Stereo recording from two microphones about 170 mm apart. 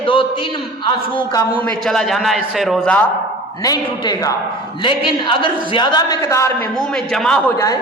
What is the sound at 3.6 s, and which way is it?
A man's voice, 20° left (ahead or behind).